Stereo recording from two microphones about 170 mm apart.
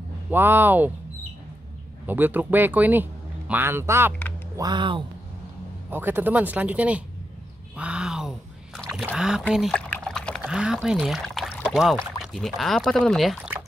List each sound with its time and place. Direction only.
0.3 s speech: 10° right (ahead or behind)
2.0 s speech: 10° right (ahead or behind)
4.6 s speech: 25° right (ahead or behind)
5.9 s speech: 10° right (ahead or behind)
9.5 s pour: centre (ahead or behind)
12.2 s speech: centre (ahead or behind)